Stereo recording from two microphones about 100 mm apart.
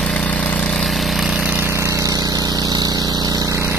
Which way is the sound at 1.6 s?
25° right (ahead or behind).